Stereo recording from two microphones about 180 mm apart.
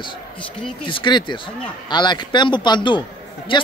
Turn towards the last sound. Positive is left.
turn(degrees=25)  # may be behind; listen again after turning